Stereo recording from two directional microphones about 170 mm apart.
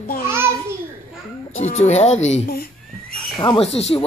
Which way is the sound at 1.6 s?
40° left (ahead or behind).